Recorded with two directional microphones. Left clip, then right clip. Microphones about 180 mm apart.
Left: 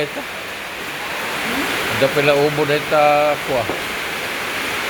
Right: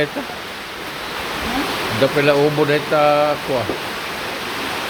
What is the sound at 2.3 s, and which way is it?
Speech, 30° right (ahead or behind).